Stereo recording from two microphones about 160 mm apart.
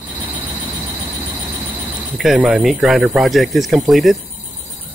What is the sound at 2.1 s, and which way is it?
Speech, 5° right (ahead or behind).